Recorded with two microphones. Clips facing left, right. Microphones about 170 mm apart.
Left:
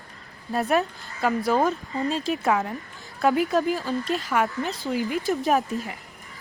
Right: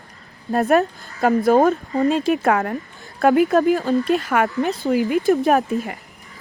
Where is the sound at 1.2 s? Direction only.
45° right (ahead or behind); by 2.7 s 65° right (ahead or behind).